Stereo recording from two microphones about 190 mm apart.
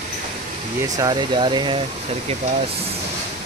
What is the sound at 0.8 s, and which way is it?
Speech, 20° right (ahead or behind).